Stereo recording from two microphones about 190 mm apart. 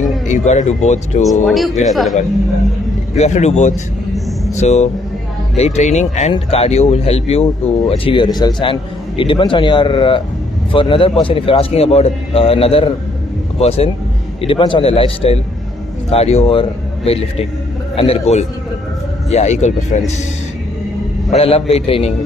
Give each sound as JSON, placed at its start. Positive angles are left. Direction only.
{"t": 0.3, "sound": "speech", "side_deg": 40}
{"t": 1.4, "sound": "speech", "side_deg": 0}
{"t": 3.2, "sound": "speech", "side_deg": 35}
{"t": 21.3, "sound": "speech", "side_deg": 30}